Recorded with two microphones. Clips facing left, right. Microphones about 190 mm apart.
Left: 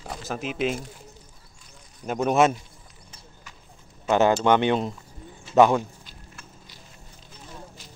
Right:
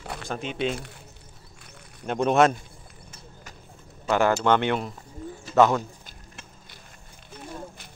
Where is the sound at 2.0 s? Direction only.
5° left (ahead or behind).